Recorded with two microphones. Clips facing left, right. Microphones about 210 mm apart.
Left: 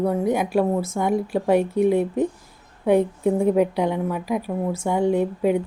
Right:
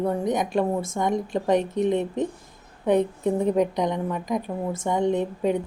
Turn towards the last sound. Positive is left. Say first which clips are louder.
# left 3 dB
turn(degrees=10)  # may be behind; listen again after turning